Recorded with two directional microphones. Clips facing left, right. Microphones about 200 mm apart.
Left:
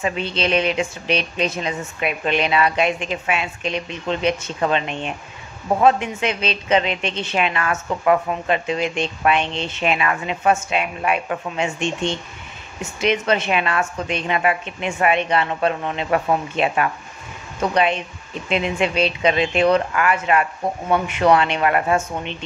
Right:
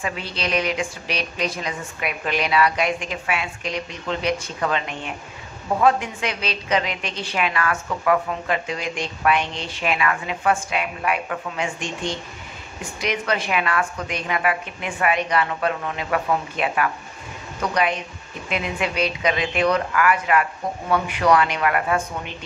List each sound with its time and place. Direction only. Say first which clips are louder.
0.0 s a woman's voice: left 5 dB; 25° left (ahead or behind)